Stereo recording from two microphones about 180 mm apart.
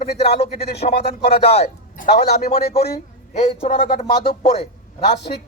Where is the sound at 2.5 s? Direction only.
35° left (ahead or behind).